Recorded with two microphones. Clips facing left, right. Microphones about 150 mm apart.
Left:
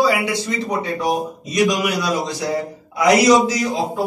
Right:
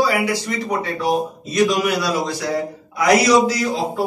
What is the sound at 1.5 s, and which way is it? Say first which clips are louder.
A man's voice: right 1 dB; 15° left (ahead or behind).